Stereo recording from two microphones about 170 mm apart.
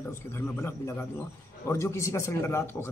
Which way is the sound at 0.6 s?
15° left (ahead or behind).